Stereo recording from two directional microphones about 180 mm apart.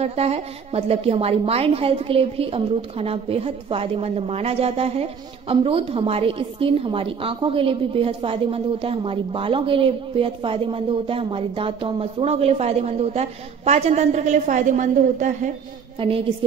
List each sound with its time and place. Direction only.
0.0 s a woman's voice: 35° right (ahead or behind)
16.0 s a woman's voice: 30° right (ahead or behind)